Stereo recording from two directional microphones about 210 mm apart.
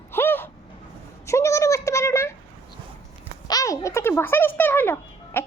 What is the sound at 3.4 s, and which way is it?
Speech, 15° left (ahead or behind).